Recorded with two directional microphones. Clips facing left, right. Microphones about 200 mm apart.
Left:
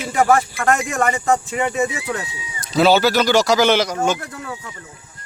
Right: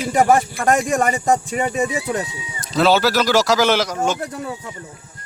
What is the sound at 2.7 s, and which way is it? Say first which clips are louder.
A man's voice: left 1 dB; centre (ahead or behind).